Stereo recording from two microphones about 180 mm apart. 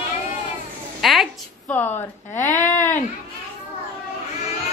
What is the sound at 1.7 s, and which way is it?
Speech, 10° left (ahead or behind).